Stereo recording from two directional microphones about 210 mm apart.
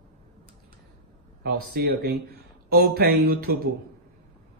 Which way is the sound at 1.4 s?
45° right (ahead or behind).